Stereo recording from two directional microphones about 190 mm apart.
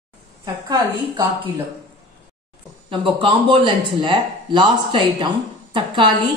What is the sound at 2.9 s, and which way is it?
Speech, 25° right (ahead or behind).